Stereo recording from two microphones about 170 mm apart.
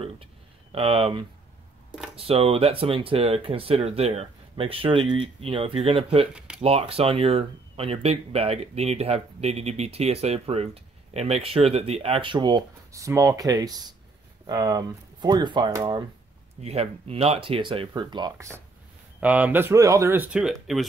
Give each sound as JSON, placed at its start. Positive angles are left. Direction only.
{"t": 0.0, "sound": "a sound", "side_deg": -35}
{"t": 2.1, "sound": "speech", "side_deg": -35}
{"t": 6.3, "sound": "a sound", "side_deg": -5}
{"t": 6.6, "sound": "speech", "side_deg": -35}
{"t": 16.6, "sound": "speech", "side_deg": -35}
{"t": 19.1, "sound": "speech", "side_deg": -10}